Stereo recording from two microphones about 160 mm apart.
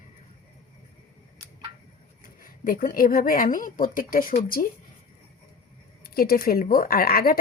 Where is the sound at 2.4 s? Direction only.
60° left (ahead or behind).